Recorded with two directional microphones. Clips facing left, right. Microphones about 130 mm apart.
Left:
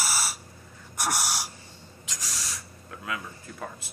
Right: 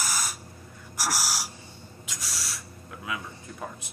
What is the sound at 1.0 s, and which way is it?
Gasp, centre (ahead or behind).